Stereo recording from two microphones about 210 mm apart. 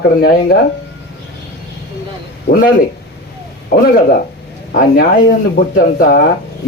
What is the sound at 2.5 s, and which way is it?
Speech, 55° left (ahead or behind).